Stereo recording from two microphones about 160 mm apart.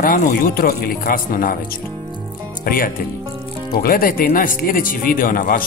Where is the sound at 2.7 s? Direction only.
60° left (ahead or behind).